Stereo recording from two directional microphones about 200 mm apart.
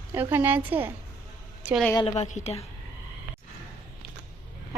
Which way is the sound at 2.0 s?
35° left (ahead or behind).